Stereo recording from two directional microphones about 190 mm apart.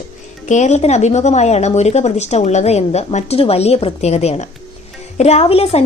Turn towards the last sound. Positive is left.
turn(degrees=30)  # may be behind; listen again after turning